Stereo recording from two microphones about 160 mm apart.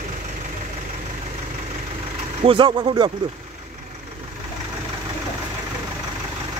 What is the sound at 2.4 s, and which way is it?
Speech, 35° right (ahead or behind).